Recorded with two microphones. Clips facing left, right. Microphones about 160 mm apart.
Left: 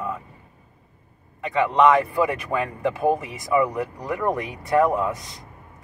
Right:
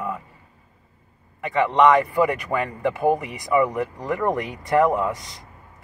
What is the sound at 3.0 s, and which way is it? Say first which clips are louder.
Speech: right 1 dB; 20° right (ahead or behind).